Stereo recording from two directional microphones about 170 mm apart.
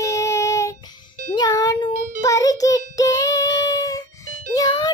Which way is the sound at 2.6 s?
20° left (ahead or behind).